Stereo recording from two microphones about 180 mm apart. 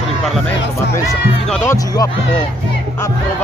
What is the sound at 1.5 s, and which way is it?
Speech, 15° left (ahead or behind).